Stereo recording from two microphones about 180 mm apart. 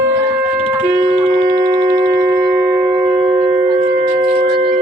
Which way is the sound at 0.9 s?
25° right (ahead or behind).